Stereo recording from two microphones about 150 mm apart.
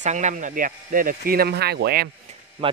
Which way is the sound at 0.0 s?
55° right (ahead or behind).